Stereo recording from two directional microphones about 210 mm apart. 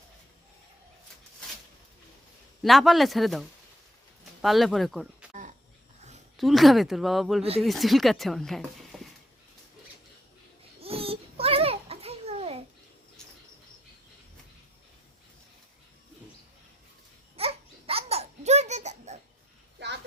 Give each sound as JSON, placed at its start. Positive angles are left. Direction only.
{"t": 2.6, "sound": "speech", "side_deg": 0}
{"t": 5.3, "sound": "a sound", "side_deg": -35}
{"t": 6.3, "sound": "speech", "side_deg": 0}
{"t": 10.8, "sound": "babbling", "side_deg": -25}
{"t": 17.3, "sound": "babbling", "side_deg": -25}
{"t": 19.8, "sound": "a sound", "side_deg": -55}